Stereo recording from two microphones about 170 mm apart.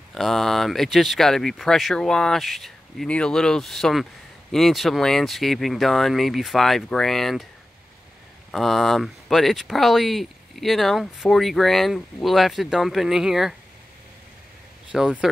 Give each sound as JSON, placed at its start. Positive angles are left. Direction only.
{"t": 0.1, "sound": "speech", "side_deg": 0}
{"t": 8.5, "sound": "speech", "side_deg": 0}
{"t": 14.9, "sound": "speech", "side_deg": -5}